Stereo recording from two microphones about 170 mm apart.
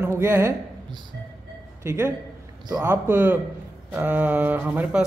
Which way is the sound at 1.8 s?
15° right (ahead or behind).